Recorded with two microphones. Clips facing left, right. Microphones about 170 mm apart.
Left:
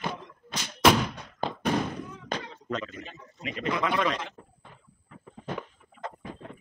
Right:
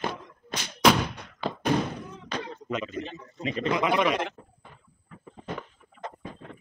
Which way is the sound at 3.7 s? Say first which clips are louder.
Right 3 dB; 15° right (ahead or behind).